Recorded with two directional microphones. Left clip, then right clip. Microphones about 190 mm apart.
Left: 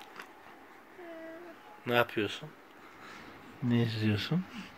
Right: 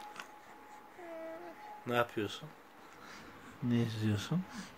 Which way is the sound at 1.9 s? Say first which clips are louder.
Left 5 dB; 10° left (ahead or behind).